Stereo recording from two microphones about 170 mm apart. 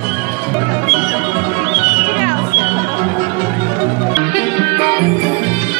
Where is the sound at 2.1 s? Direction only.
50° right (ahead or behind).